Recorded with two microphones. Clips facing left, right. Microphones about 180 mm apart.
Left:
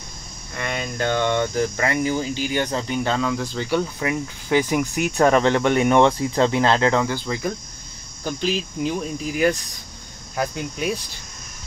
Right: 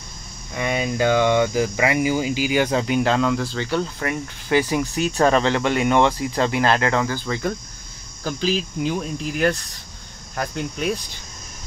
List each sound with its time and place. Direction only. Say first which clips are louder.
0.6 s speech: right 5 dB; 10° right (ahead or behind); by 4.7 s 15° left (ahead or behind)
5.1 s cricket: left 1 dB; 15° left (ahead or behind)
5.8 s speech: left 2 dB; 20° left (ahead or behind)
6.6 s cricket: left 1 dB; 20° left (ahead or behind)
8.2 s speech: right 1 dB; centre (ahead or behind)
10.3 s cricket: left 1 dB; 5° left (ahead or behind)